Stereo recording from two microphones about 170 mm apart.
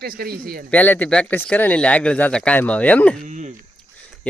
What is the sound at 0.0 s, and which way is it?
Speech, 65° right (ahead or behind).